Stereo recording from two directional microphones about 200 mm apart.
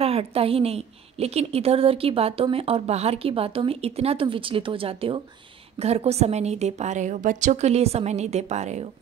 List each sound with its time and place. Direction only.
0.0 s a woman's voice: 30° right (ahead or behind)